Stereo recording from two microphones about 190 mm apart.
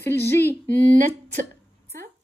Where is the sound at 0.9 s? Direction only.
40° right (ahead or behind).